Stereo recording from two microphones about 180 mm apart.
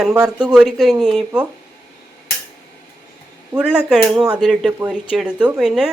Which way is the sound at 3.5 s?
5° right (ahead or behind).